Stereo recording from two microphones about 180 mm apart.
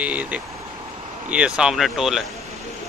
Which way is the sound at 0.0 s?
5° right (ahead or behind).